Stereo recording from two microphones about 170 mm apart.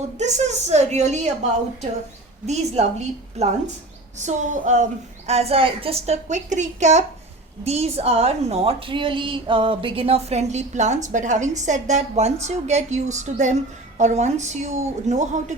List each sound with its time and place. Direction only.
0.2 s a woman's voice: 40° right (ahead or behind)